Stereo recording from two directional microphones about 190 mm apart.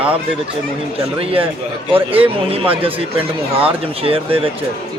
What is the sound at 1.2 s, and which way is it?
A man's voice, 30° right (ahead or behind).